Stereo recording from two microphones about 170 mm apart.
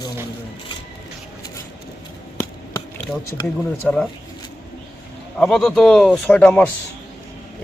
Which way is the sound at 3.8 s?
Centre (ahead or behind).